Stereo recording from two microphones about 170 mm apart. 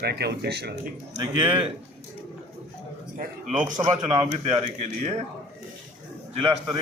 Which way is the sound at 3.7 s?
25° right (ahead or behind).